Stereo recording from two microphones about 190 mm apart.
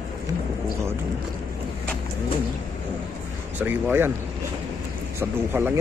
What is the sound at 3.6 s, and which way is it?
Speech, 10° right (ahead or behind).